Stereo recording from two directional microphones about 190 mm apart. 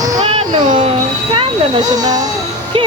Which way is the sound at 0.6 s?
45° right (ahead or behind).